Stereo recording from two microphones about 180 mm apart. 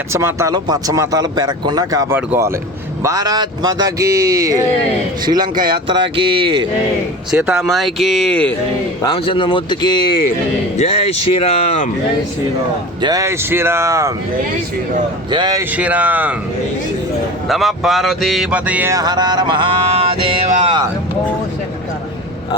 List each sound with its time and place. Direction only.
0.1 s speech: 15° right (ahead or behind)
7.3 s mantra: 15° right (ahead or behind)
7.6 s speech: centre (ahead or behind)
9.0 s speech: 30° left (ahead or behind)
10.8 s speech: 35° left (ahead or behind)
13.0 s mantra: 20° right (ahead or behind)
15.3 s speech: 25° right (ahead or behind)
15.7 s mantra: 10° right (ahead or behind)
17.5 s mantra: centre (ahead or behind); by 20.3 s 30° right (ahead or behind)
20.5 s speech: 30° right (ahead or behind)